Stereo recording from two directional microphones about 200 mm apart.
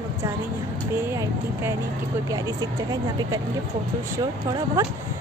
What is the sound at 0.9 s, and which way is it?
Speech, 10° right (ahead or behind).